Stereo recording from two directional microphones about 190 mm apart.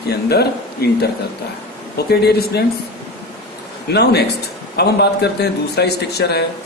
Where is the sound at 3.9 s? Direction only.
60° left (ahead or behind).